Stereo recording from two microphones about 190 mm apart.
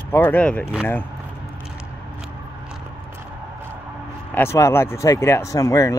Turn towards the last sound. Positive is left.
turn(degrees=15)  # may be behind; listen again after turning